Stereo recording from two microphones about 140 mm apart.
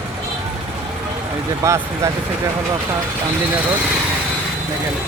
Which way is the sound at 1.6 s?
20° right (ahead or behind).